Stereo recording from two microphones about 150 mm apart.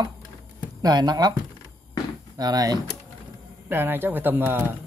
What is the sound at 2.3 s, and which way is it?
Speech, 25° right (ahead or behind).